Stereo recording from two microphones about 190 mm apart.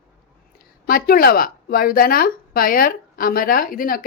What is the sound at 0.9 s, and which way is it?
A woman's voice, 50° left (ahead or behind).